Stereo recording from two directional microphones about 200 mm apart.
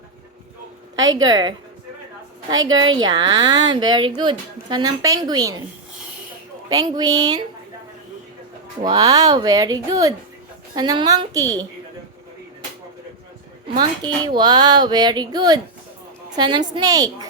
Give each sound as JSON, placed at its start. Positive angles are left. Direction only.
{"t": 1.0, "sound": "speech", "side_deg": -20}
{"t": 6.7, "sound": "speech", "side_deg": -20}
{"t": 8.8, "sound": "speech", "side_deg": -20}
{"t": 13.7, "sound": "speech", "side_deg": -25}